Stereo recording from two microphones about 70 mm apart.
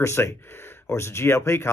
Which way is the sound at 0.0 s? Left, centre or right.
Left.